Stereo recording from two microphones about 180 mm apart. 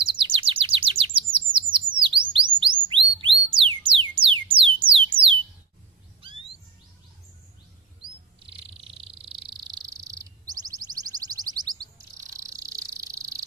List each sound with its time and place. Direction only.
0.0 s chirp: 30° right (ahead or behind)
8.4 s cricket: 30° right (ahead or behind)
12.3 s insect: 20° right (ahead or behind)